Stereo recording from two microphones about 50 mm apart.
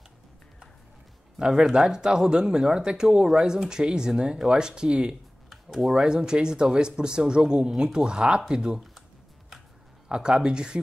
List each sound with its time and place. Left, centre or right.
1.4 s speech: centre
5.5 s speech: centre
10.0 s speech: centre